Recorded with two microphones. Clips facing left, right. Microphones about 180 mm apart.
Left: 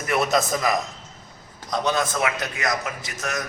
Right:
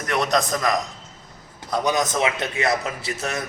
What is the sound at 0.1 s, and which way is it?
Speech, 5° left (ahead or behind).